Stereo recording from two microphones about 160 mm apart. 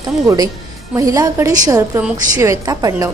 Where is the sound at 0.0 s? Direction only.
25° right (ahead or behind).